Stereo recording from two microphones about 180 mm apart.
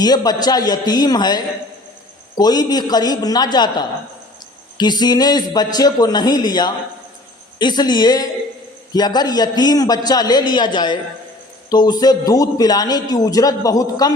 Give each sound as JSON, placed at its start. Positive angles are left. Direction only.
{"t": 0.0, "sound": "a man's voice", "side_deg": 20}